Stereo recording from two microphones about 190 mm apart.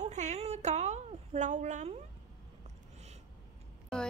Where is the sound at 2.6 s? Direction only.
35° right (ahead or behind).